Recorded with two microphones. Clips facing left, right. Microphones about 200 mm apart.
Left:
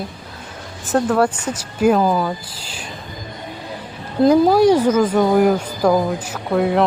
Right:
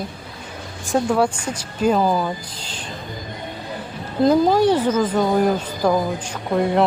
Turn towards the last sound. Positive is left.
turn(degrees=0)  # may be behind; listen again after turning